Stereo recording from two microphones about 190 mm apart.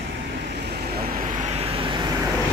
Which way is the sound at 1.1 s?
45° right (ahead or behind).